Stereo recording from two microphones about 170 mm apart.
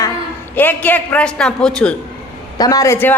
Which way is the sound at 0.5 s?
10° left (ahead or behind).